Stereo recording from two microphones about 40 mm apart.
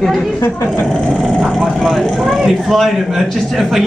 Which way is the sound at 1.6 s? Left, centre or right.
Centre.